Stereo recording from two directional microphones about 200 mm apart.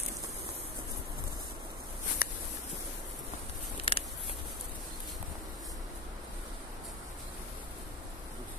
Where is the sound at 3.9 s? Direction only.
25° left (ahead or behind).